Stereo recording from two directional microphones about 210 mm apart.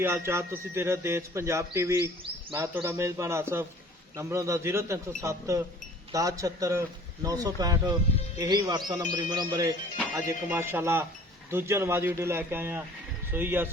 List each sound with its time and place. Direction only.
0.0 s speech: 10° right (ahead or behind)